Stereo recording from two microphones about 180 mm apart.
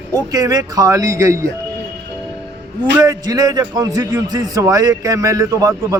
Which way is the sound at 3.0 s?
20° right (ahead or behind).